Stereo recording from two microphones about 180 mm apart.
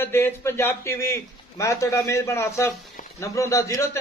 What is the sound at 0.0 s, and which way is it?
A man's voice, 15° left (ahead or behind).